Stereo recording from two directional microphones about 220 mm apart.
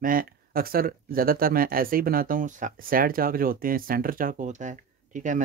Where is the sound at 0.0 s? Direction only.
40° right (ahead or behind).